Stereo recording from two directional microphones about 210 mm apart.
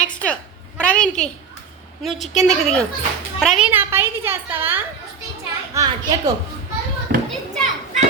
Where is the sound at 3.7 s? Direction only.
10° right (ahead or behind).